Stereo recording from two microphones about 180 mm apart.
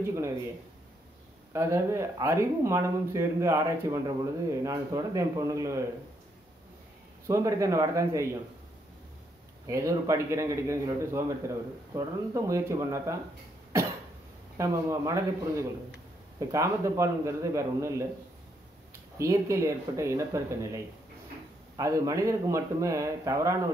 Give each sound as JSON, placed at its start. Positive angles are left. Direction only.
{"t": 1.5, "sound": "speech", "side_deg": -15}
{"t": 7.2, "sound": "speech", "side_deg": -15}
{"t": 9.7, "sound": "speech", "side_deg": -15}
{"t": 14.6, "sound": "speech", "side_deg": -15}
{"t": 19.1, "sound": "speech", "side_deg": -15}